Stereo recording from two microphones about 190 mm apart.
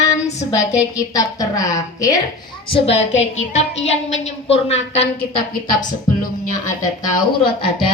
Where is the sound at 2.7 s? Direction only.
35° left (ahead or behind).